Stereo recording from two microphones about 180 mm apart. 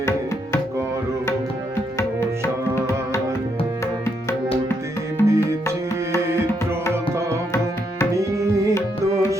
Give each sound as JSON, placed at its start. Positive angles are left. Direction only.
{"t": 2.0, "sound": "music", "side_deg": 15}
{"t": 5.2, "sound": "music", "side_deg": -15}
{"t": 8.1, "sound": "tabla", "side_deg": -20}